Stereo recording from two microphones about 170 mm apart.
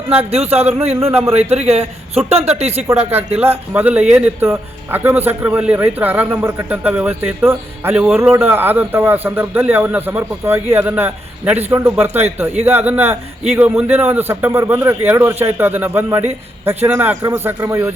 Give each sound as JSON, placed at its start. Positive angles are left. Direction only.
{"t": 0.2, "sound": "a man's voice", "side_deg": -35}
{"t": 0.9, "sound": "speech", "side_deg": -15}
{"t": 1.2, "sound": "a man's voice", "side_deg": -35}
{"t": 3.0, "sound": "speech", "side_deg": -10}
{"t": 3.3, "sound": "a man's voice", "side_deg": -35}
{"t": 3.8, "sound": "speech", "side_deg": -10}